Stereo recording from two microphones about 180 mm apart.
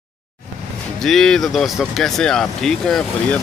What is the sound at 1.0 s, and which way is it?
Speech, centre (ahead or behind).